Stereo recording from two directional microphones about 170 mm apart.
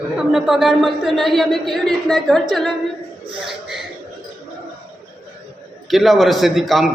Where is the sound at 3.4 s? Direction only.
Centre (ahead or behind).